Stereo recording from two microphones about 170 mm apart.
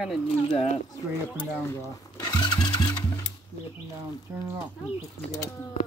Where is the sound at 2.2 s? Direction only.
25° left (ahead or behind).